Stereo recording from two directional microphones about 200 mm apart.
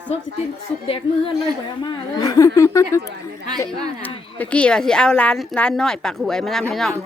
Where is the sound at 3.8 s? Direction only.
20° right (ahead or behind).